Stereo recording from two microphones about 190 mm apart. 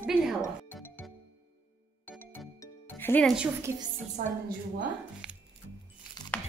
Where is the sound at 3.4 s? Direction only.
15° right (ahead or behind).